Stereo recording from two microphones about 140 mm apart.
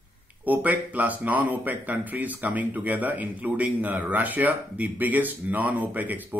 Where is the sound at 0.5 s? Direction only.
10° right (ahead or behind).